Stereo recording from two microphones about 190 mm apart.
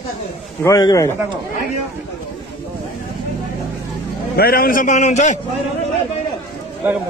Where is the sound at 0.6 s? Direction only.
20° left (ahead or behind).